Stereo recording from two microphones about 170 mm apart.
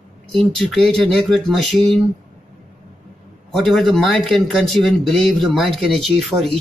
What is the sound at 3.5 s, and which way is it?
Speech, centre (ahead or behind).